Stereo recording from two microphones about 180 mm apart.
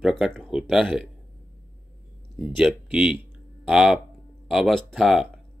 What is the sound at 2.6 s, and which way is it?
Speech, 5° right (ahead or behind).